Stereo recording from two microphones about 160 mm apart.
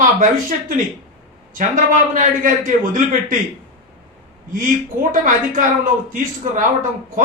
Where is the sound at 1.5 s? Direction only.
55° right (ahead or behind).